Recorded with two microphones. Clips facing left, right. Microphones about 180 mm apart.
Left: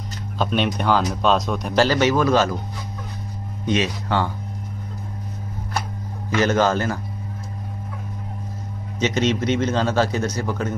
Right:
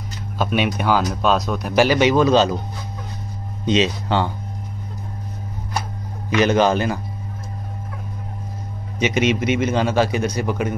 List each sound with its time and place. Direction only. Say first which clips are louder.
0.4 s a man's voice: right 1 dB; 5° right (ahead or behind)
3.6 s speech: right 3 dB; 25° right (ahead or behind)
6.3 s a man's voice: right 2 dB; 15° right (ahead or behind)
9.0 s a man's voice: right 2 dB; 10° right (ahead or behind)